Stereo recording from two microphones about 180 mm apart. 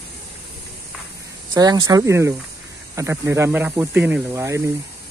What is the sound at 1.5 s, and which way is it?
Speech, 20° right (ahead or behind).